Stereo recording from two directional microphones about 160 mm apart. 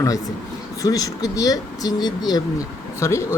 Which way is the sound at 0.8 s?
20° left (ahead or behind).